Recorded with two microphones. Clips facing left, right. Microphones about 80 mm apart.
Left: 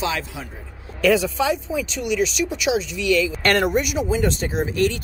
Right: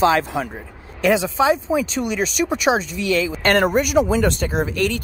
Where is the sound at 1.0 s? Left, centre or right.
Right.